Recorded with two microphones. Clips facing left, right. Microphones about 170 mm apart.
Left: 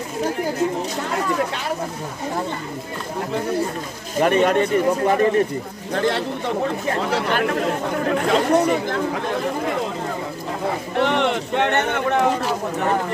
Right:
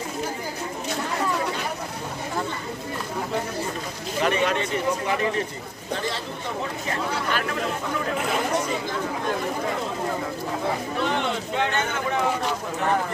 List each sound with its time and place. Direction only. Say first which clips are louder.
4.2 s speech: left 7 dB; 50° left (ahead or behind)
5.9 s speech: left 10 dB; 60° left (ahead or behind)
7.2 s speech: left 6 dB; 55° left (ahead or behind)
11.0 s speech: left 10 dB; 75° left (ahead or behind)